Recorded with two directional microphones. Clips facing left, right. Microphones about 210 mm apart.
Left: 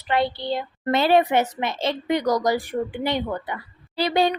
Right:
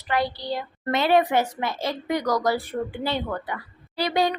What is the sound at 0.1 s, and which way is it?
A woman's voice, 25° left (ahead or behind).